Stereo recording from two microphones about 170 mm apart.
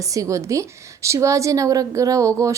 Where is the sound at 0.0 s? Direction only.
20° right (ahead or behind).